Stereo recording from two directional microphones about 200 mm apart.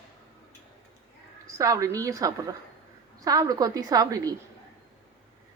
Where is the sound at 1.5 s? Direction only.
15° right (ahead or behind).